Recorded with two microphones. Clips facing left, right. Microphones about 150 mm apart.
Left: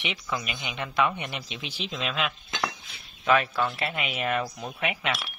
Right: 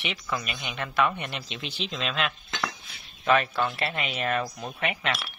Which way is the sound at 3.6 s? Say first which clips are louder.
Even; 5° left (ahead or behind).